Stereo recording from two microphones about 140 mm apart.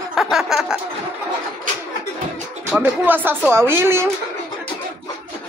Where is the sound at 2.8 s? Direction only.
15° right (ahead or behind).